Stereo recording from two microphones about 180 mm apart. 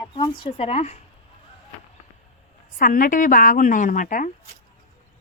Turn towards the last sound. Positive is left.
turn(degrees=45)  # may be behind; listen again after turning